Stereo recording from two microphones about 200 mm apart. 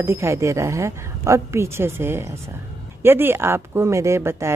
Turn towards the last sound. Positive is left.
turn(degrees=-15)  # may be behind; listen again after turning